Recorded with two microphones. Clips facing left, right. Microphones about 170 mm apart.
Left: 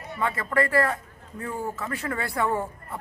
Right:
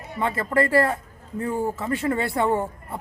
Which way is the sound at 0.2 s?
30° right (ahead or behind).